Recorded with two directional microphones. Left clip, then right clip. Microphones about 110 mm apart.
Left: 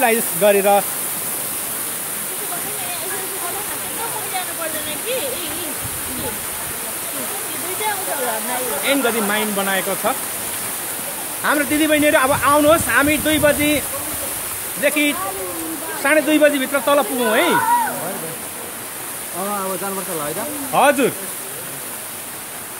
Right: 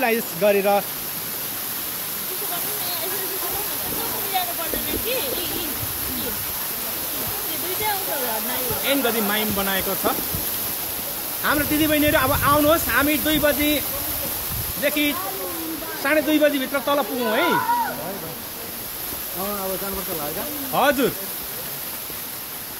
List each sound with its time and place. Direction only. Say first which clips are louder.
0.0 s speech: left 4 dB; 15° left (ahead or behind)
8.8 s speech: left 3 dB; 10° left (ahead or behind)
11.4 s speech: left 4 dB; 10° left (ahead or behind); by 17.6 s 30° left (ahead or behind)
20.7 s speech: left 5 dB; 15° left (ahead or behind)